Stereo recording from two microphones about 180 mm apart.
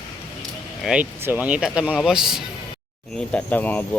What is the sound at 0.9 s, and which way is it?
Speech, 10° right (ahead or behind).